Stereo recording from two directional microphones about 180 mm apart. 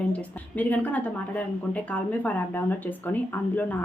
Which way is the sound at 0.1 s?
10° left (ahead or behind).